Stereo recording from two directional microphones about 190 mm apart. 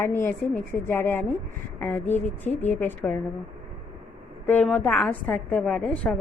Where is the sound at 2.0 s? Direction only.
40° left (ahead or behind).